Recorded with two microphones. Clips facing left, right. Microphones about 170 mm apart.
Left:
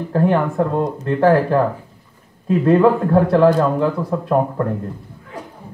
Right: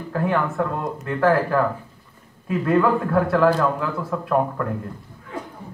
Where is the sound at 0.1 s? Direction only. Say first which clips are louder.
Left 5 dB; 30° left (ahead or behind).